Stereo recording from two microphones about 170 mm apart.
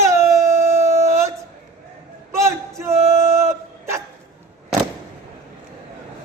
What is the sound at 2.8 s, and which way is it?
Music, 15° right (ahead or behind).